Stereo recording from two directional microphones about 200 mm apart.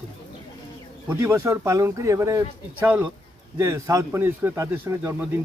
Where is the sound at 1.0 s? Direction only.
15° right (ahead or behind).